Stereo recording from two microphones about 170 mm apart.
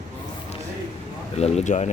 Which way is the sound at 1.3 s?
40° left (ahead or behind).